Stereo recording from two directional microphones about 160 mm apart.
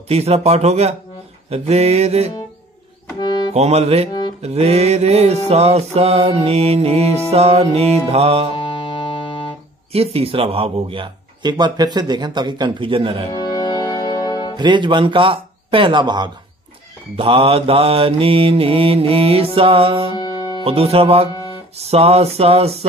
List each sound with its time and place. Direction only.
0.1 s music: 40° right (ahead or behind)
3.2 s music: 25° left (ahead or behind)
3.5 s music: 40° right (ahead or behind)
8.5 s music: 35° left (ahead or behind)
9.9 s music: 35° right (ahead or behind)
13.3 s music: 25° left (ahead or behind)
14.6 s speech: 30° right (ahead or behind)
17.2 s music: 35° right (ahead or behind)
20.2 s music: 25° left (ahead or behind)
20.6 s music: 40° right (ahead or behind)